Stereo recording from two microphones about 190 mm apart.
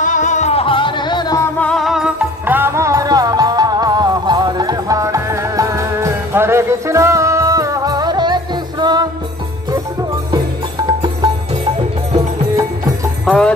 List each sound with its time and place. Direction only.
0.0 s music: 40° left (ahead or behind); by 1.5 s 20° left (ahead or behind)
1.6 s music: 5° left (ahead or behind); by 9.0 s 20° right (ahead or behind)
10.9 s music: 20° right (ahead or behind)
13.2 s jingle bell: 5° left (ahead or behind)